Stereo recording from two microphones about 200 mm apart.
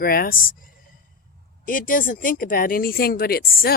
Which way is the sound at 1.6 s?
45° left (ahead or behind).